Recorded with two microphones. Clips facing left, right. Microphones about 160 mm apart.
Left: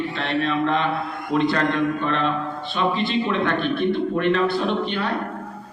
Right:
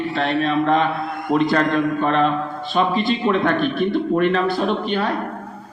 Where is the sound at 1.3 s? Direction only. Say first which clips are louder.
Right 3 dB; 50° right (ahead or behind).